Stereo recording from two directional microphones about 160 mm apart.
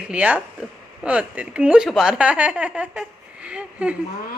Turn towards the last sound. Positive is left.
turn(degrees=-5)  # may be behind; listen again after turning